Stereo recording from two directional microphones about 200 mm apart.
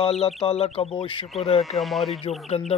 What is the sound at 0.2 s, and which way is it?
Speech, 30° left (ahead or behind).